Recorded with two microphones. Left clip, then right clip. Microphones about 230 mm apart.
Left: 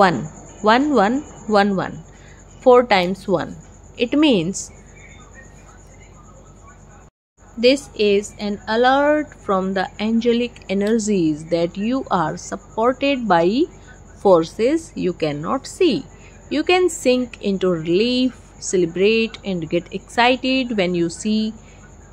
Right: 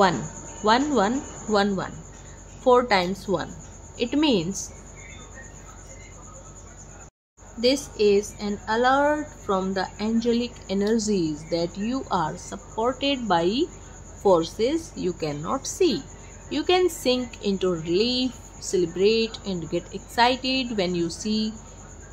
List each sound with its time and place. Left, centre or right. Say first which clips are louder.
0.7 s a woman's voice: left 6 dB; centre
7.6 s a woman's voice: left 5 dB; centre